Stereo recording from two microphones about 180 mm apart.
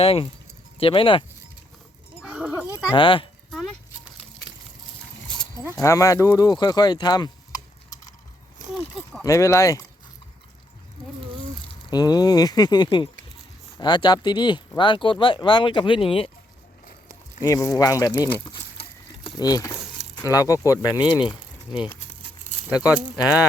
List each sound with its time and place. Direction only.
0.0 s speech: 30° left (ahead or behind)
2.2 s speech: 5° right (ahead or behind)
2.9 s speech: 25° left (ahead or behind)
3.5 s a sound: centre (ahead or behind)
5.8 s speech: 15° left (ahead or behind)
8.6 s a sound: 45° right (ahead or behind)
9.2 s speech: 15° left (ahead or behind)
11.9 s speech: 20° left (ahead or behind)
17.4 s speech: 20° left (ahead or behind)